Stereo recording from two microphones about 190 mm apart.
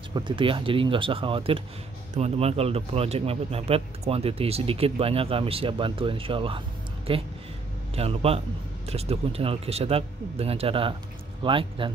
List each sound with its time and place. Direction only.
0.1 s speech: 25° right (ahead or behind)